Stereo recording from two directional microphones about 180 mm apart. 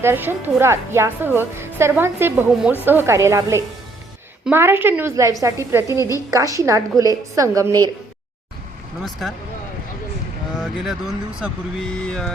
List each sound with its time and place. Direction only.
0.0 s a woman's voice: 15° right (ahead or behind)
6.0 s a woman's voice: 20° left (ahead or behind)
6.3 s a woman's voice: 20° right (ahead or behind)
10.6 s speech: 5° right (ahead or behind)